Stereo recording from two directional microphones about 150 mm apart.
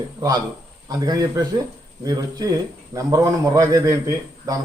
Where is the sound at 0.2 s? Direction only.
25° right (ahead or behind).